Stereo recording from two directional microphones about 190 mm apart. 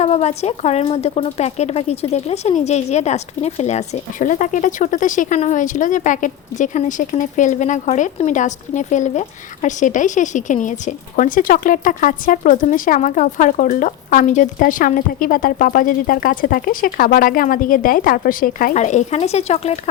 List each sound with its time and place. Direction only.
0.0 s speech: 35° left (ahead or behind)